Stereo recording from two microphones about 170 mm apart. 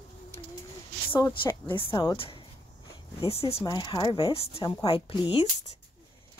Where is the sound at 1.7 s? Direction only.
30° left (ahead or behind).